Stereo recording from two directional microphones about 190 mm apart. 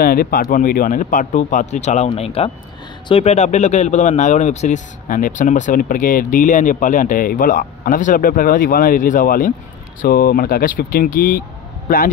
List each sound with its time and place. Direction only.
0.0 s a man's voice: 50° left (ahead or behind)